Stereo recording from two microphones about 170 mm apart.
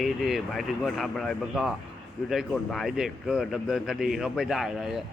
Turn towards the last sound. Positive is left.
turn(degrees=0)  # may be behind; listen again after turning